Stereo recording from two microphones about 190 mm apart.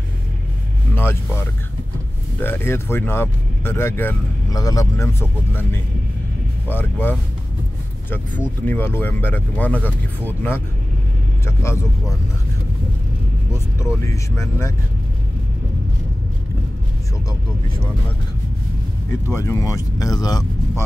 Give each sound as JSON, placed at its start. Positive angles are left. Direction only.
{"t": 0.9, "sound": "music", "side_deg": 10}
{"t": 2.4, "sound": "speech", "side_deg": 10}
{"t": 14.0, "sound": "speech", "side_deg": 15}
{"t": 19.3, "sound": "speech", "side_deg": 15}